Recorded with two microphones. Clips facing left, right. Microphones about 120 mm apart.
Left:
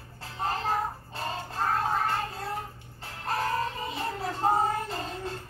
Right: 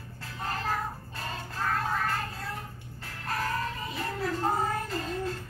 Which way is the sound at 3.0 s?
30° left (ahead or behind).